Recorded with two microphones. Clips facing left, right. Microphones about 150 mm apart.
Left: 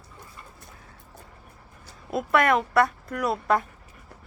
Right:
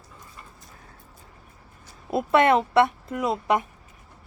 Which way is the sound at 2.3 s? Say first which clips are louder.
Right 3 dB; 25° right (ahead or behind).